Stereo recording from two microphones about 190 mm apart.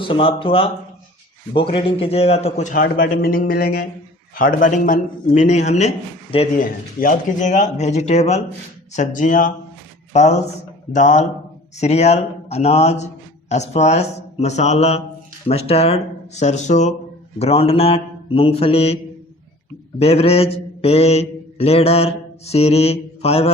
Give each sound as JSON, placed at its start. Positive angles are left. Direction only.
{"t": 0.1, "sound": "speech", "side_deg": 30}
{"t": 2.8, "sound": "a man's voice", "side_deg": 50}
{"t": 20.0, "sound": "mantra", "side_deg": 35}